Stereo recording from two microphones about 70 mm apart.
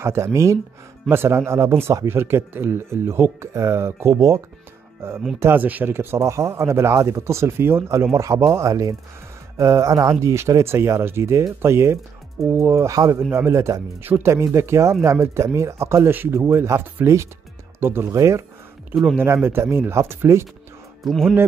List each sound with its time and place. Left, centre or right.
0.0 s speech: right
1.0 s speech: right
5.4 s speech: right
13.3 s speech: right
21.0 s speech: centre